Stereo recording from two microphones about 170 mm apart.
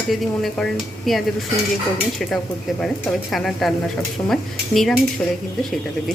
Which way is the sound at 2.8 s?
5° left (ahead or behind).